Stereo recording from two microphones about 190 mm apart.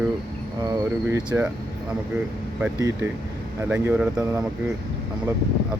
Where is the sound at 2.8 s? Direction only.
15° right (ahead or behind).